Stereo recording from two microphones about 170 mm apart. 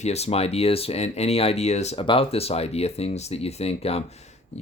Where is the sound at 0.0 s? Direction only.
40° left (ahead or behind).